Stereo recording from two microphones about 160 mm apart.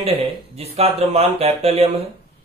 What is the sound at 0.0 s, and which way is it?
A man's voice, 35° right (ahead or behind).